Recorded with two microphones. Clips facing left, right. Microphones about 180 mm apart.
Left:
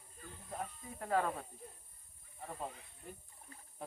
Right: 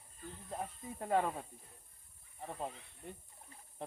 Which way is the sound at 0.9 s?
20° right (ahead or behind).